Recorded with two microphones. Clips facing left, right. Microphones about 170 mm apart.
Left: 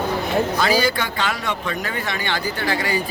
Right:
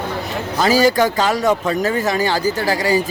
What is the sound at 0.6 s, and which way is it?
Speech, 40° right (ahead or behind).